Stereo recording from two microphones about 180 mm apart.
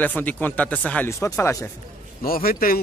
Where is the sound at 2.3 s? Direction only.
55° left (ahead or behind).